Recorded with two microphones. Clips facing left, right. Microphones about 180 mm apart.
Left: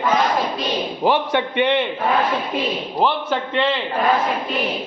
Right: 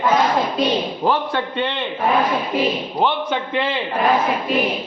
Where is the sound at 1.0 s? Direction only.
15° left (ahead or behind).